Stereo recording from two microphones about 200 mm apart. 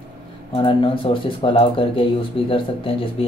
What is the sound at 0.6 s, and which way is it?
Speech, 25° left (ahead or behind).